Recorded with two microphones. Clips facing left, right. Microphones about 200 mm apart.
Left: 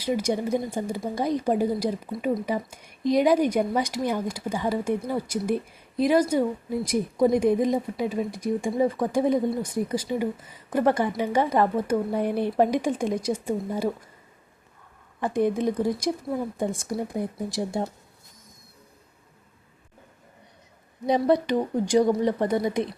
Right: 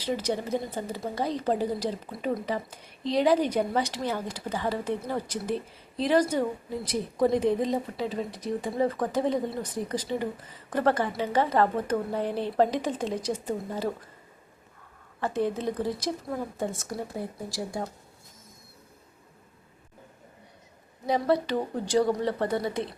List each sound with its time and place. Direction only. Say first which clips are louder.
0.0 s a woman's voice: left 4 dB; 10° left (ahead or behind)
15.2 s a woman's voice: left 4 dB; 15° left (ahead or behind)
21.1 s a woman's voice: left 4 dB; 15° left (ahead or behind)